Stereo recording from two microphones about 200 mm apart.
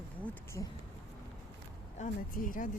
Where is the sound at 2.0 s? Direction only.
45° left (ahead or behind).